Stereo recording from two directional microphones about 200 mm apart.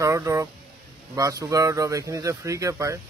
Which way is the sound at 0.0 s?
15° right (ahead or behind).